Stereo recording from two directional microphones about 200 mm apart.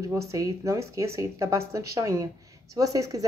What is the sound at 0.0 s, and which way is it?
Speech, 15° right (ahead or behind).